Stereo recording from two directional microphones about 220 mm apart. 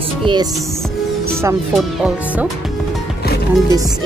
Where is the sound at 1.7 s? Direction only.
Centre (ahead or behind).